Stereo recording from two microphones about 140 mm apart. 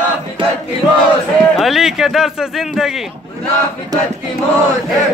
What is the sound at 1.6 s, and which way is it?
Speech, centre (ahead or behind).